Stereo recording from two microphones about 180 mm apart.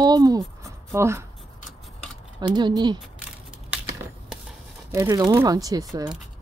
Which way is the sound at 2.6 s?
25° right (ahead or behind).